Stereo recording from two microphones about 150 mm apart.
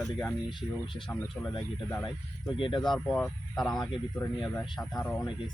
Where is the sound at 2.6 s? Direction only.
30° left (ahead or behind).